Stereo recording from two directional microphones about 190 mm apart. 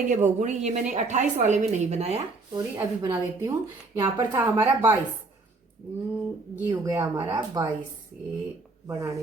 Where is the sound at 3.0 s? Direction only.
15° right (ahead or behind).